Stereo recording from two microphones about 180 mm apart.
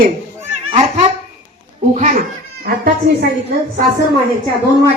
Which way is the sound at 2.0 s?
45° right (ahead or behind).